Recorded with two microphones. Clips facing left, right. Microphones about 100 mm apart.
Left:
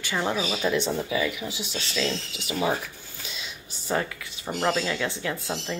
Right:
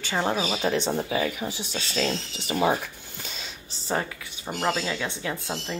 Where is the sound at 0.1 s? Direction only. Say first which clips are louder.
Right 1 dB; 35° right (ahead or behind).